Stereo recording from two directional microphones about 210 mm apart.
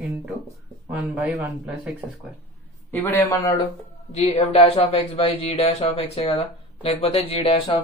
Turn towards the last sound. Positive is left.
turn(degrees=25)  # may be behind; listen again after turning